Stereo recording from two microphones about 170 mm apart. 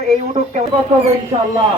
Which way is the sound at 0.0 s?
40° right (ahead or behind).